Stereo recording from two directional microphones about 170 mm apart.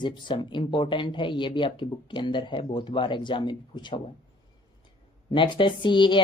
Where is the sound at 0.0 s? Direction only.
25° left (ahead or behind).